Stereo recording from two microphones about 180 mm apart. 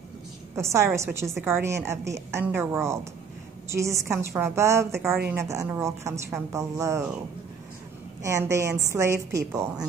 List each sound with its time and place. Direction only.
0.6 s a woman's voice: 15° right (ahead or behind)
8.2 s a woman's voice: 15° right (ahead or behind)